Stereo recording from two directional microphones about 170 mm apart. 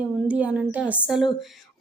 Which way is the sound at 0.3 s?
10° right (ahead or behind).